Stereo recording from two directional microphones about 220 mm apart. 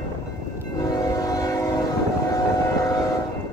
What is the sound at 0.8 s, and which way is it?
Train, 15° left (ahead or behind).